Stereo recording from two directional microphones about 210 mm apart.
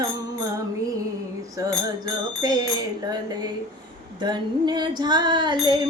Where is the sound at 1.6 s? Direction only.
15° right (ahead or behind).